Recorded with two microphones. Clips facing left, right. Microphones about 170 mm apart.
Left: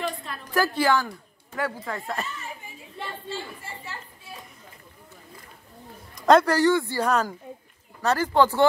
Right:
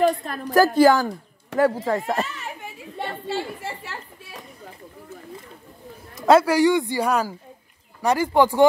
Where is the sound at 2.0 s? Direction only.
75° right (ahead or behind).